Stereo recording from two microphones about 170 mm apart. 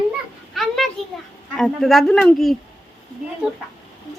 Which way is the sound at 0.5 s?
Centre (ahead or behind).